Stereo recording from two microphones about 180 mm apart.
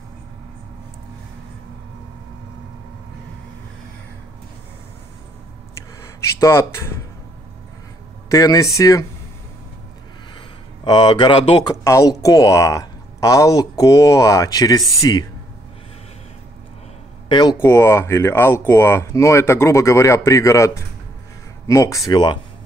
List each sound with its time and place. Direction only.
6.4 s speech: 15° left (ahead or behind)
8.3 s speech: 20° left (ahead or behind)
10.8 s speech: 25° left (ahead or behind)
11.7 s speech: 15° left (ahead or behind)
17.3 s speech: 25° left (ahead or behind)
17.6 s speech: 15° left (ahead or behind)